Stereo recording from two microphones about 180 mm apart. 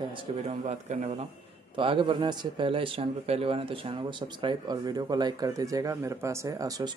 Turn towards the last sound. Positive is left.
turn(degrees=-20)  # may be behind; listen again after turning